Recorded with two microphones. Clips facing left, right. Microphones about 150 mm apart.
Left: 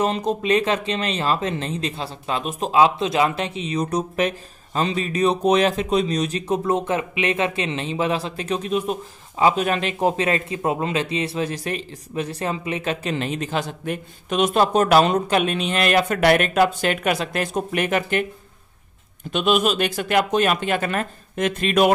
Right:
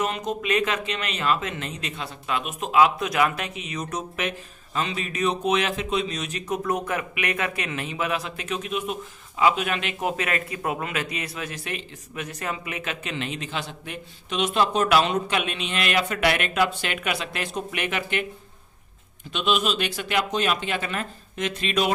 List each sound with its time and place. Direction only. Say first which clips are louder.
0.0 s speech: left 5 dB; 30° left (ahead or behind)
19.3 s speech: left 5 dB; 50° left (ahead or behind)